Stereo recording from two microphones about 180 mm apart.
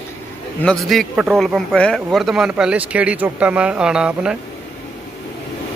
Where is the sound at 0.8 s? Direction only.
Centre (ahead or behind).